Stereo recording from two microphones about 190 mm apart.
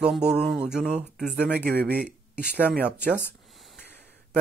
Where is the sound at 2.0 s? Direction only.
50° left (ahead or behind).